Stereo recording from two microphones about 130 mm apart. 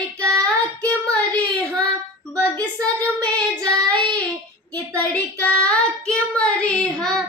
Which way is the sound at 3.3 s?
10° left (ahead or behind).